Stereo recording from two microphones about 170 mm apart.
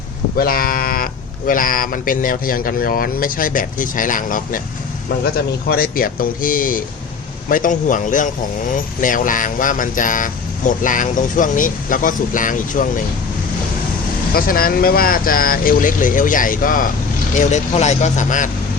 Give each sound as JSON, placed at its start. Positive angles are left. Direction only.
{"t": 0.3, "sound": "speech", "side_deg": 60}
{"t": 5.6, "sound": "speech", "side_deg": 60}
{"t": 14.3, "sound": "speech", "side_deg": 60}
{"t": 17.3, "sound": "speech", "side_deg": 45}